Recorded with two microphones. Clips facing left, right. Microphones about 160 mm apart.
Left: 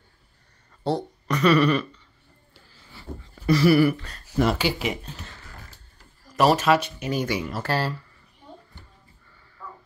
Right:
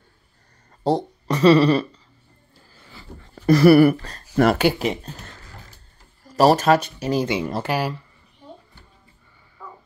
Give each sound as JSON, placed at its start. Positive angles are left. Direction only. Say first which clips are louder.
{"t": 0.7, "sound": "speech", "louder": "right 5 dB", "side_deg": -35}
{"t": 2.7, "sound": "a sound", "louder": "left 3 dB", "side_deg": -55}
{"t": 3.9, "sound": "speech", "louder": "right 5 dB", "side_deg": -35}
{"t": 4.4, "sound": "speech", "louder": "right 5 dB", "side_deg": -60}
{"t": 4.8, "sound": "speech", "louder": "right 4 dB", "side_deg": -40}
{"t": 6.3, "sound": "speech", "louder": "right 3 dB", "side_deg": -40}
{"t": 7.6, "sound": "speech", "louder": "right 2 dB", "side_deg": -15}